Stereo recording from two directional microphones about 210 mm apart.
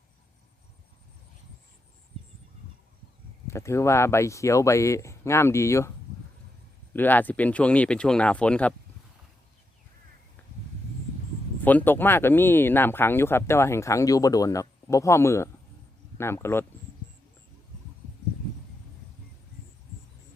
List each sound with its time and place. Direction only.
3.4 s speech: 15° left (ahead or behind)
6.9 s speech: 10° left (ahead or behind)
11.6 s speech: 10° left (ahead or behind)